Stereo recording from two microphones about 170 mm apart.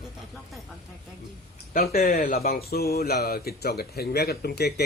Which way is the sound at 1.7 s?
60° left (ahead or behind).